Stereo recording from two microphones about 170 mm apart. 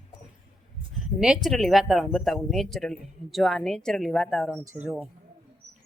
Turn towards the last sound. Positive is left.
turn(degrees=-5)  # may be behind; listen again after turning